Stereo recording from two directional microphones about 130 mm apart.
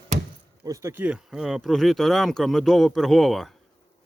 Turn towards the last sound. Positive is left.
turn(degrees=0)  # may be behind; listen again after turning